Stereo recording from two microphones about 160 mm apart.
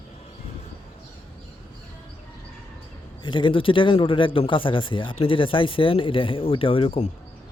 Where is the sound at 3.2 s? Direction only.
30° left (ahead or behind).